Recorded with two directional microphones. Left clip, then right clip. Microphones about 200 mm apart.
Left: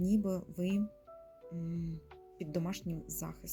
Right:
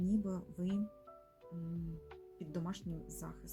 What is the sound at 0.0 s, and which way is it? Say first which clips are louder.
Speech: left 5 dB; 25° left (ahead or behind).